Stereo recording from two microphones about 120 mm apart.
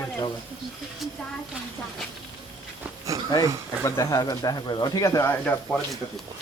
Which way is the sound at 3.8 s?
25° left (ahead or behind).